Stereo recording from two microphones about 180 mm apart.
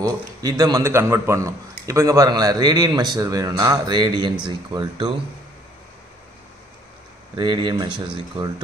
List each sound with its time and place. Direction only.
0.0 s a man's voice: 20° right (ahead or behind)
7.3 s a man's voice: 25° right (ahead or behind)